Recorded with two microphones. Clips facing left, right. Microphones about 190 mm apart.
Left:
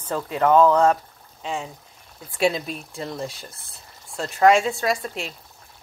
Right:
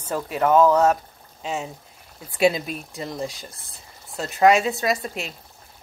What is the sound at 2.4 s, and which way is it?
Speech, 10° right (ahead or behind).